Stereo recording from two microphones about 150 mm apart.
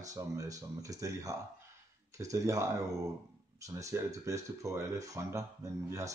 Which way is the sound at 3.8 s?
20° right (ahead or behind).